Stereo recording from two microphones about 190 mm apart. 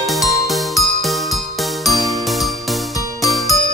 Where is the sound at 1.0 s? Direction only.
Centre (ahead or behind).